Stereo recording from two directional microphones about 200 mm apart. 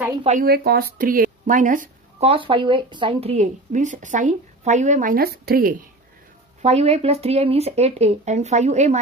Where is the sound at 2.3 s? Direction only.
25° right (ahead or behind); by 5.8 s 45° right (ahead or behind).